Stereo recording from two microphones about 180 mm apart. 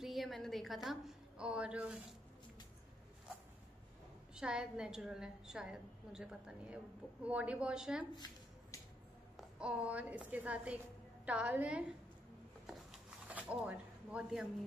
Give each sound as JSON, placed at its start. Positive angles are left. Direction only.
{"t": 0.0, "sound": "a sound", "side_deg": 0}
{"t": 0.8, "sound": "a woman's voice", "side_deg": -5}
{"t": 4.4, "sound": "a woman's voice", "side_deg": -5}
{"t": 8.7, "sound": "a sound", "side_deg": 15}
{"t": 9.4, "sound": "a woman's voice", "side_deg": -5}
{"t": 13.3, "sound": "speech", "side_deg": -10}